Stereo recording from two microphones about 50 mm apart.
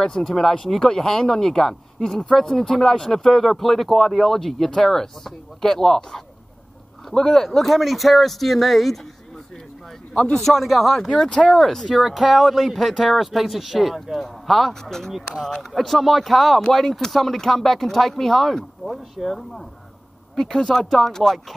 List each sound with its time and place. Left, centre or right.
0.0 s speech: centre
10.1 s a man's voice: left
10.4 s speech: centre
11.1 s speech: centre
20.3 s speech: centre